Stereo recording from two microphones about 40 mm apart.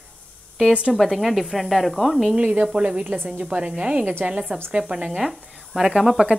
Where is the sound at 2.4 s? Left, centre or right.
Right.